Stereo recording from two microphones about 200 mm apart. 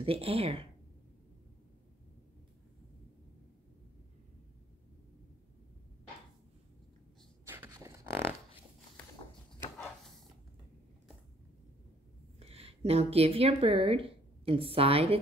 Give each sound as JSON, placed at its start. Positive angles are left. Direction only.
{"t": 0.0, "sound": "speech", "side_deg": -30}
{"t": 7.4, "sound": "dog", "side_deg": -15}
{"t": 12.4, "sound": "speech", "side_deg": -30}